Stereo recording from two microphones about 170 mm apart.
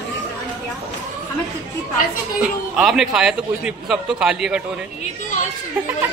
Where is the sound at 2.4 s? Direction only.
5° right (ahead or behind).